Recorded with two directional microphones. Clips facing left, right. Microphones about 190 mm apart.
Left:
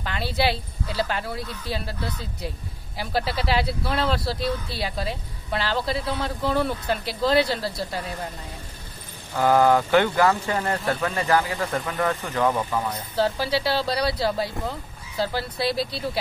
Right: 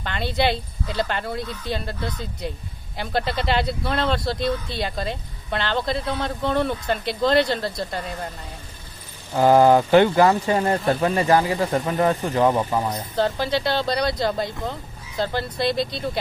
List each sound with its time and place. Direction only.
0.0 s speech: 5° left (ahead or behind)
9.3 s speech: 30° right (ahead or behind)
13.1 s speech: 5° left (ahead or behind)